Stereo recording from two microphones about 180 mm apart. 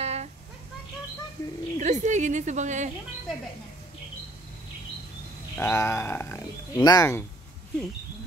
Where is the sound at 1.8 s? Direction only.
40° right (ahead or behind).